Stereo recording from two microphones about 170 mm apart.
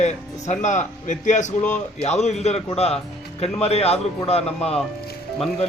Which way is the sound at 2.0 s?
40° left (ahead or behind).